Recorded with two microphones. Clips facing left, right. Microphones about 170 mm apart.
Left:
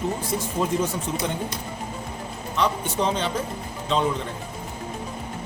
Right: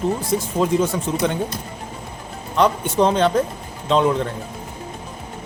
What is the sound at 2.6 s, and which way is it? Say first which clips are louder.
Speech: right 7 dB; 60° right (ahead or behind).